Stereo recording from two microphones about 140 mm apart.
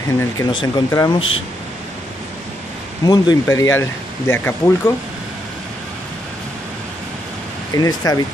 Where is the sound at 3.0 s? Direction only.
25° left (ahead or behind).